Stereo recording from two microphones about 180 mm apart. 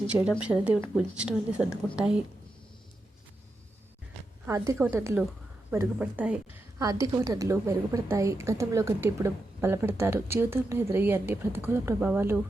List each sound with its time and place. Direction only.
0.4 s a woman's voice: 5° right (ahead or behind)
4.4 s a woman's voice: 15° right (ahead or behind)
6.7 s a woman's voice: 20° right (ahead or behind)